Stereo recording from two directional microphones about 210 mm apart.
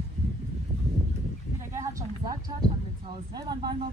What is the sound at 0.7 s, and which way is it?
Horse, 35° right (ahead or behind).